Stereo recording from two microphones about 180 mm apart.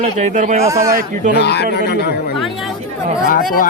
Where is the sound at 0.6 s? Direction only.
15° right (ahead or behind).